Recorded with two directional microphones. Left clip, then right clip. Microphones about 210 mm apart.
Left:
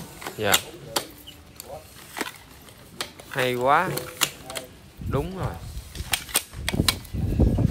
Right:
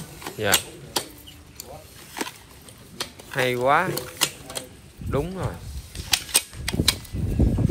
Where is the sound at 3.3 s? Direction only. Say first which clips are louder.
Even; 10° left (ahead or behind).